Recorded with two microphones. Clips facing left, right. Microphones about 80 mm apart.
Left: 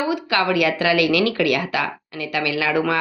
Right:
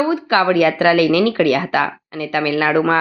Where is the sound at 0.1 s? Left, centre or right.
Right.